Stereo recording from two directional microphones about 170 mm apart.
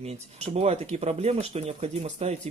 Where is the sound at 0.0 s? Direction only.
40° right (ahead or behind).